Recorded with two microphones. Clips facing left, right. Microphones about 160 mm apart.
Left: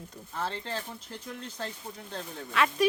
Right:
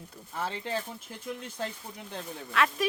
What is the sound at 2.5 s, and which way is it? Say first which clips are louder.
Speech: left 1 dB; centre (ahead or behind).